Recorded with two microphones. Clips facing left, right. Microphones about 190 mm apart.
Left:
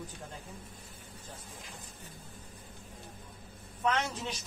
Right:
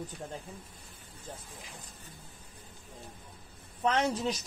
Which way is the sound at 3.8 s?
35° right (ahead or behind).